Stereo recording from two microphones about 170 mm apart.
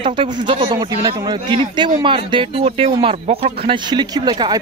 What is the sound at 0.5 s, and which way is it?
A man's voice, 30° right (ahead or behind).